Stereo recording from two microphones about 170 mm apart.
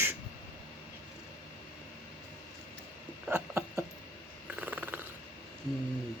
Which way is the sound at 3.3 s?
15° right (ahead or behind).